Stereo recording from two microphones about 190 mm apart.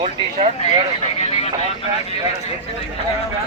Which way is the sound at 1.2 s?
35° left (ahead or behind).